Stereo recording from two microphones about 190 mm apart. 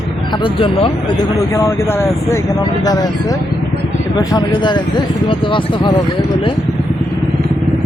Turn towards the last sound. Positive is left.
turn(degrees=25)  # may be behind; listen again after turning